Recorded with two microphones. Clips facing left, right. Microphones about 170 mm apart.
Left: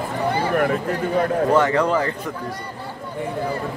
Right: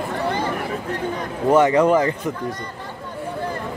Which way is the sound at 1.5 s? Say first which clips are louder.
Right 6 dB; 20° right (ahead or behind).